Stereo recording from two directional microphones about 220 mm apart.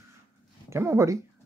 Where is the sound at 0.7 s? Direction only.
10° right (ahead or behind).